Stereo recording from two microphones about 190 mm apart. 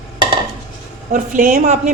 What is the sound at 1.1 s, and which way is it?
Speech, 45° right (ahead or behind).